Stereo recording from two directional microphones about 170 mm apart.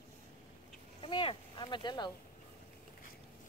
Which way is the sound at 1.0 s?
30° left (ahead or behind).